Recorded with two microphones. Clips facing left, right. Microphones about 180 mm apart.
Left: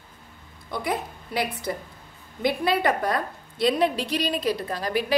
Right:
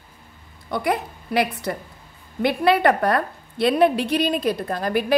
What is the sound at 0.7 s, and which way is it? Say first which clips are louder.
A woman's voice: right 5 dB; 65° right (ahead or behind).